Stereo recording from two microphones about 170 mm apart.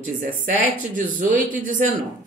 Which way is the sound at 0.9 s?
50° right (ahead or behind).